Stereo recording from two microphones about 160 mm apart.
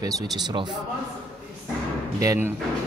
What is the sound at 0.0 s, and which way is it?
Speech, 25° right (ahead or behind).